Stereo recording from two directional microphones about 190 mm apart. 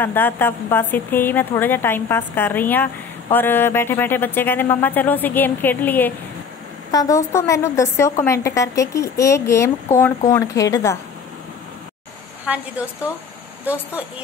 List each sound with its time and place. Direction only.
0.0 s a woman's voice: 10° left (ahead or behind)
12.5 s a woman's voice: 5° right (ahead or behind)
13.7 s a woman's voice: 10° right (ahead or behind)